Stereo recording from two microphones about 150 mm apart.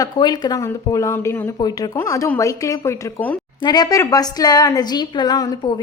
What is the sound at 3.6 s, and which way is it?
A woman's voice, 25° left (ahead or behind).